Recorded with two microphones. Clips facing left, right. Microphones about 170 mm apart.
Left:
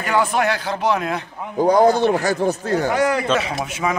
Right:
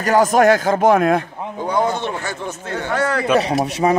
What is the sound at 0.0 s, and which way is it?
Speech, 40° right (ahead or behind).